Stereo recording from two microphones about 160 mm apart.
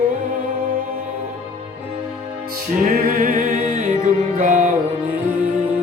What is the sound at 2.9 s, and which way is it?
Music, 60° right (ahead or behind).